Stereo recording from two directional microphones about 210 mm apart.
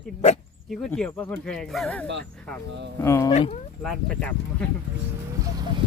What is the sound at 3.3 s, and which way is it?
Speech, 30° left (ahead or behind).